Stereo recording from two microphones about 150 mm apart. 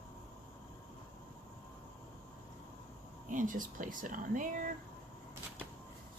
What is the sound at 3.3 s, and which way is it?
Speech, 60° right (ahead or behind).